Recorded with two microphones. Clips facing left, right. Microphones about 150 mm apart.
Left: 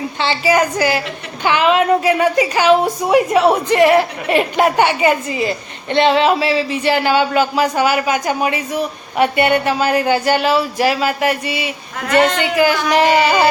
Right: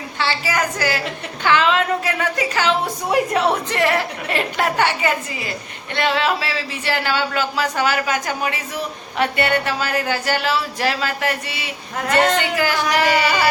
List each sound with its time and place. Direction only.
0.2 s a woman's voice: 20° left (ahead or behind)